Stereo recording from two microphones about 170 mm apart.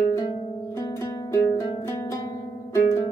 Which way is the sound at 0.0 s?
20° left (ahead or behind).